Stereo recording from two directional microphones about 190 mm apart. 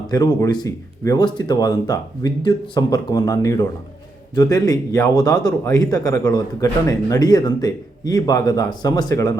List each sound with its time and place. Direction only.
0.1 s speech: 20° left (ahead or behind)